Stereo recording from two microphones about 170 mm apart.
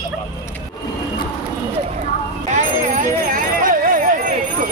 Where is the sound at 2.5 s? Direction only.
50° right (ahead or behind).